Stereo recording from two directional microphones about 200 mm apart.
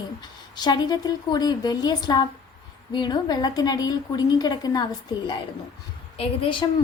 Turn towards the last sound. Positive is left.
turn(degrees=25)  # may be behind; listen again after turning